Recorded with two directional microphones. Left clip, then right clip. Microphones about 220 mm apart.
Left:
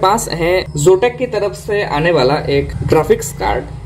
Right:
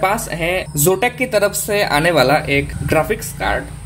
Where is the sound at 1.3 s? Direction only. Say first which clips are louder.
Right 1 dB; 40° right (ahead or behind).